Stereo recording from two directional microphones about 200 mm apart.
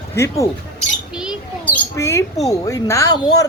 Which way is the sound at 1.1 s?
5° right (ahead or behind).